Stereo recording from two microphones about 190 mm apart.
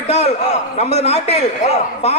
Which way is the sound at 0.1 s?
35° left (ahead or behind).